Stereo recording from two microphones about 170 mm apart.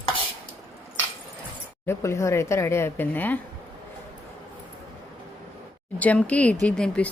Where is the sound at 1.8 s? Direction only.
15° left (ahead or behind).